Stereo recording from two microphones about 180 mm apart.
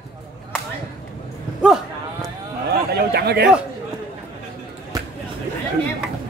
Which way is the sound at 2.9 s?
60° right (ahead or behind).